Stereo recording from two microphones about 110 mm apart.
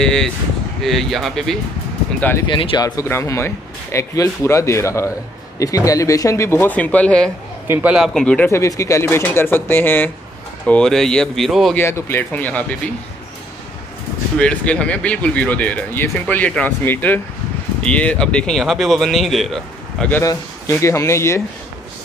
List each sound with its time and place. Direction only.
0.0 s speech: 5° left (ahead or behind)
2.4 s speech: 50° left (ahead or behind)
2.8 s speech: 25° left (ahead or behind)
7.6 s a man's voice: 20° right (ahead or behind)
7.9 s speech: centre (ahead or behind)
8.5 s speech: 25° left (ahead or behind)
10.7 s speech: 5° left (ahead or behind)
11.7 s speech: 20° left (ahead or behind)
14.4 s speech: 10° left (ahead or behind)
20.2 s speech: 25° left (ahead or behind)